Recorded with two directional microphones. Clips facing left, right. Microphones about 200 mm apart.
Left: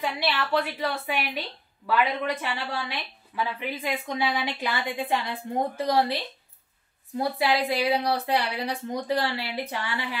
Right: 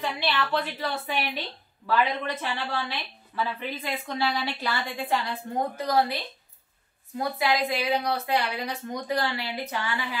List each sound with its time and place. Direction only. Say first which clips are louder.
0.0 s a woman's voice: even; 10° left (ahead or behind)
5.6 s speech: left 2 dB; 30° left (ahead or behind)
7.2 s a woman's voice: left 1 dB; 30° left (ahead or behind)